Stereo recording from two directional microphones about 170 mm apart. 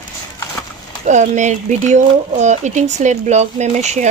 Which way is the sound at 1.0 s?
45° right (ahead or behind).